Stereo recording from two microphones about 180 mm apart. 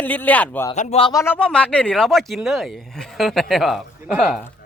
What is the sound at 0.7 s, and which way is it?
Speech, 35° left (ahead or behind).